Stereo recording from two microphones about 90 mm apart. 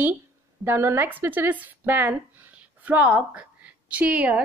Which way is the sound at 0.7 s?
25° right (ahead or behind).